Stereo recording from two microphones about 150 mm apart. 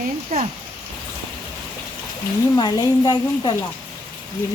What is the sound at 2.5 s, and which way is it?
Speech, 25° left (ahead or behind).